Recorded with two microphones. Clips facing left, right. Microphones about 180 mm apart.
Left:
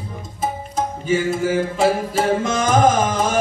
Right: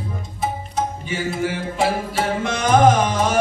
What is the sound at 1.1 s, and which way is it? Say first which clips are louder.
Music: left 5 dB; 40° left (ahead or behind).